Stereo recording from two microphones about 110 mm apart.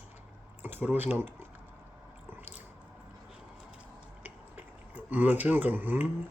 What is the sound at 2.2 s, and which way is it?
Biting, 20° right (ahead or behind).